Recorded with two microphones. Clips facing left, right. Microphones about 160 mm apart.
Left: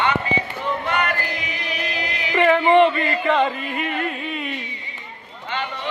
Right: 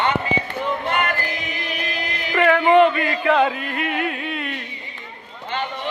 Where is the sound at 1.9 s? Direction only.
50° right (ahead or behind).